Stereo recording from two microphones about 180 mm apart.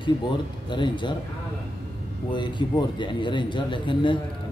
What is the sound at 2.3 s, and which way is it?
A man's voice, 25° left (ahead or behind).